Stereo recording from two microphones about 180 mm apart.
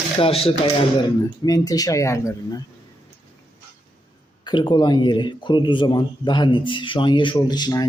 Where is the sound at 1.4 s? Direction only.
20° left (ahead or behind).